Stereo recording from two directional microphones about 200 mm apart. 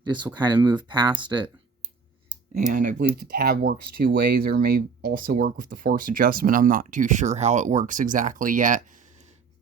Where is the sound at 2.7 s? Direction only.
40° right (ahead or behind).